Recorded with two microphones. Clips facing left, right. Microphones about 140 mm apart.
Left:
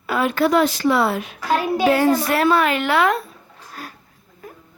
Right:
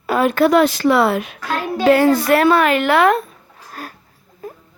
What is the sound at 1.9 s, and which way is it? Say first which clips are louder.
Speech: right 7 dB; 65° right (ahead or behind).